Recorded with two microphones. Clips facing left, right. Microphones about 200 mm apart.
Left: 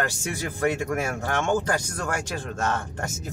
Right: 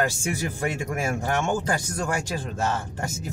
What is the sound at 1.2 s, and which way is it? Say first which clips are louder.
Speech: left 2 dB; 10° right (ahead or behind).